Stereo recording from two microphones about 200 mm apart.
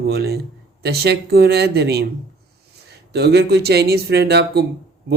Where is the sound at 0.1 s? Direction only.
55° right (ahead or behind).